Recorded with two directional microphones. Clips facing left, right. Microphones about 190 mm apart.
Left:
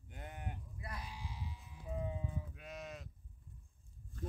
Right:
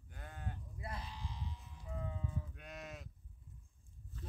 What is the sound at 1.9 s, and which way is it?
Livestock, 15° left (ahead or behind).